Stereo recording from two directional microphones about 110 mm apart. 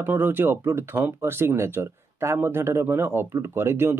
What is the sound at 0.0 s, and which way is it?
Speech, 20° right (ahead or behind).